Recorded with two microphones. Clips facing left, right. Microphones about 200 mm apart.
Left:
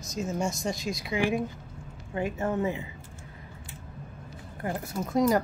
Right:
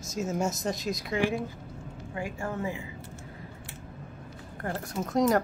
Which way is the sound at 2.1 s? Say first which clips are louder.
Left 5 dB; 20° left (ahead or behind).